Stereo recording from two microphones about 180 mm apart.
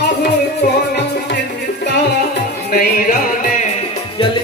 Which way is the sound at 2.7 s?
55° left (ahead or behind).